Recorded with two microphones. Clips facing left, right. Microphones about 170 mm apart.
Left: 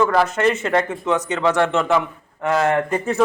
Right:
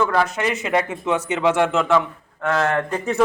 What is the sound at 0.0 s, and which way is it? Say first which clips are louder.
A man's voice: left 3 dB; centre (ahead or behind).